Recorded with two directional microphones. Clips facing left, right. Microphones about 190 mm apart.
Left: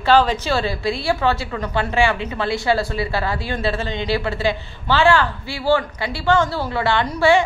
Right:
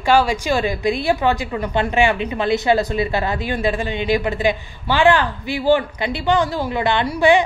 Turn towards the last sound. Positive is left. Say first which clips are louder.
# right 1 dB
turn(degrees=-15)  # may be behind; listen again after turning